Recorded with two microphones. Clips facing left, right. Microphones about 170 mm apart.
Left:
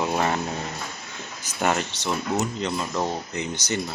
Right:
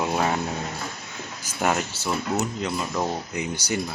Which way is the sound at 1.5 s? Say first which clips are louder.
Even; 5° right (ahead or behind).